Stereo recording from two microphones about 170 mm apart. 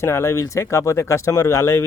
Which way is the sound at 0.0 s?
15° left (ahead or behind).